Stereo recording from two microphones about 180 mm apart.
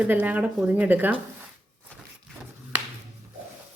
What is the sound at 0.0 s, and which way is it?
Speech, 10° right (ahead or behind).